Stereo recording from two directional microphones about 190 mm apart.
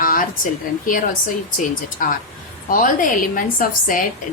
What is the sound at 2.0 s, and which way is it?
A woman's voice, 45° left (ahead or behind).